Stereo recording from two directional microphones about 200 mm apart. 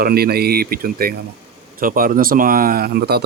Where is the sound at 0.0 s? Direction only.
50° right (ahead or behind).